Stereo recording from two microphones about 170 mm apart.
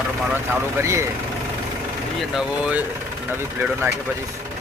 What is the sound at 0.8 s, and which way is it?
Speech, 15° right (ahead or behind).